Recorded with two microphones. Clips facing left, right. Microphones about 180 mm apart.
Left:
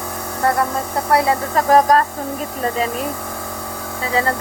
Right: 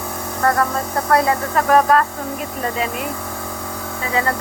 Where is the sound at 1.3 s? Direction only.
30° left (ahead or behind).